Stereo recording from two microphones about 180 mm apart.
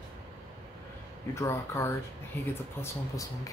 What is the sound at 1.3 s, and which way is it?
Speech, 15° left (ahead or behind).